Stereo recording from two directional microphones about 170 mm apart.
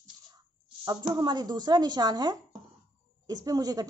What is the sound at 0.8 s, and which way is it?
Speech, 25° right (ahead or behind).